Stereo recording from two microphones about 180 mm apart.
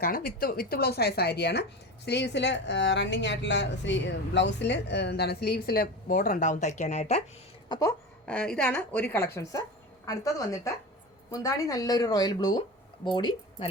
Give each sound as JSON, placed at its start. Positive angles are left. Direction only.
{"t": 0.0, "sound": "a woman's voice", "side_deg": 55}
{"t": 7.7, "sound": "speech", "side_deg": 20}
{"t": 8.3, "sound": "a woman's voice", "side_deg": 5}